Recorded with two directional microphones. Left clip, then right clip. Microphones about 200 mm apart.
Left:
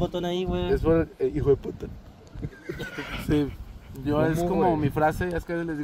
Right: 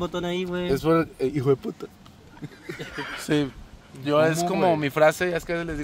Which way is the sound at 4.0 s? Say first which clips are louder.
Right 4 dB; 20° right (ahead or behind).